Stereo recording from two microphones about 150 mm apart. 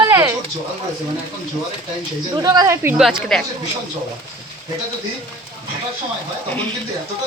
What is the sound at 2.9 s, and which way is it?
Speech, centre (ahead or behind).